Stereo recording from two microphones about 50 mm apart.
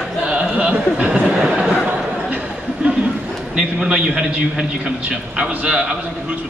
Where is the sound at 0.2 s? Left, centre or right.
Right.